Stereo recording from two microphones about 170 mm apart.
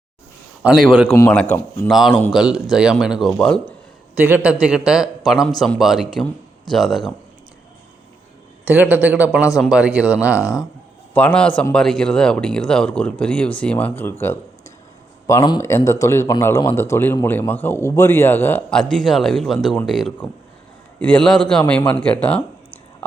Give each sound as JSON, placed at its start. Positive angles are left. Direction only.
{"t": 0.6, "sound": "a man's voice", "side_deg": -5}
{"t": 1.1, "sound": "a man's voice", "side_deg": 15}
{"t": 1.9, "sound": "a man's voice", "side_deg": 0}
{"t": 4.2, "sound": "a man's voice", "side_deg": -10}
{"t": 8.6, "sound": "a man's voice", "side_deg": -10}
{"t": 11.1, "sound": "a man's voice", "side_deg": 10}